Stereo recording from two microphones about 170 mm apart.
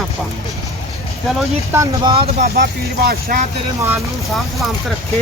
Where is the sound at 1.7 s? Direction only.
25° right (ahead or behind).